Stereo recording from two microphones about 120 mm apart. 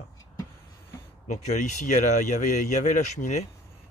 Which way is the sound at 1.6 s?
90° left.